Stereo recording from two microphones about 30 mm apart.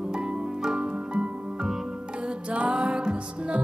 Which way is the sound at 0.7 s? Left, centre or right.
Right.